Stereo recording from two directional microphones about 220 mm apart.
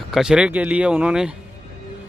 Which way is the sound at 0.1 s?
5° right (ahead or behind).